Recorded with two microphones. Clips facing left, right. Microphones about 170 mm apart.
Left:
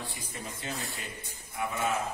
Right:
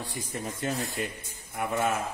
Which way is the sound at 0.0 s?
45° right (ahead or behind).